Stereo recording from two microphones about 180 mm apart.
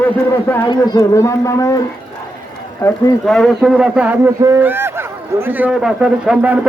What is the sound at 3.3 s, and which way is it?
A man's voice, centre (ahead or behind).